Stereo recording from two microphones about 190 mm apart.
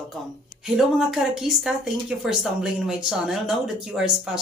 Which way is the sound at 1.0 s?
Centre (ahead or behind).